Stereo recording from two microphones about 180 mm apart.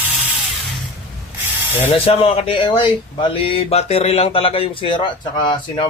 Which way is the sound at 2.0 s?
30° left (ahead or behind).